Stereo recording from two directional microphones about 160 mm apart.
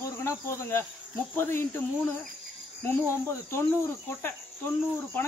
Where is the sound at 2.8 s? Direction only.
15° left (ahead or behind).